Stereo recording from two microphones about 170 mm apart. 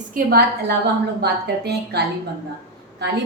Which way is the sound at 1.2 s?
75° right (ahead or behind).